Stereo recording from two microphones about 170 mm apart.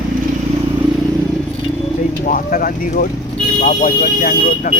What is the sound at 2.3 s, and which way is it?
Speech, 55° left (ahead or behind).